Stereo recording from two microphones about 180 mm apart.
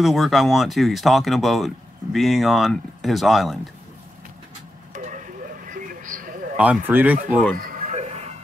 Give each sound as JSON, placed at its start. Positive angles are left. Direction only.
{"t": 0.0, "sound": "speech", "side_deg": 0}
{"t": 4.9, "sound": "a sound", "side_deg": -45}
{"t": 6.5, "sound": "speech", "side_deg": -5}
{"t": 7.5, "sound": "music", "side_deg": -50}